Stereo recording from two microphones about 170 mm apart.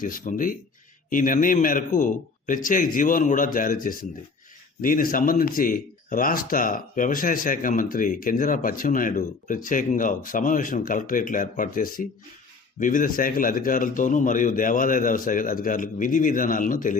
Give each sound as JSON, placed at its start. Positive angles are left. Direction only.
{"t": 0.0, "sound": "speech", "side_deg": 50}